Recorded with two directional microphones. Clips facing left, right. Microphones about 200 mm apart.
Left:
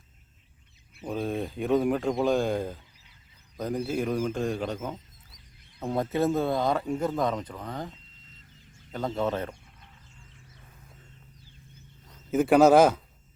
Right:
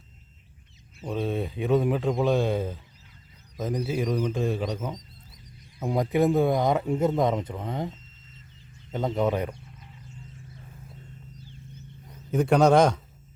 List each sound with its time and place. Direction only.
1.0 s speech: centre (ahead or behind)
5.8 s speech: 15° right (ahead or behind)
12.3 s speech: 5° left (ahead or behind)